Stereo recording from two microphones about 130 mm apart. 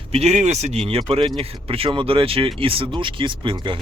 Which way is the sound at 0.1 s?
55° right (ahead or behind).